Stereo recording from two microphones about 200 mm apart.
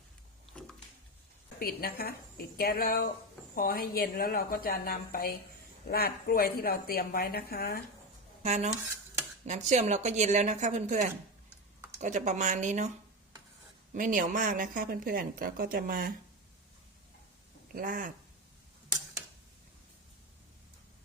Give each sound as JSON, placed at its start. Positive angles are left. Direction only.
{"t": 1.5, "sound": "a woman's voice", "side_deg": 50}
{"t": 8.4, "sound": "a woman's voice", "side_deg": -35}
{"t": 13.9, "sound": "speech", "side_deg": -40}
{"t": 17.7, "sound": "speech", "side_deg": -45}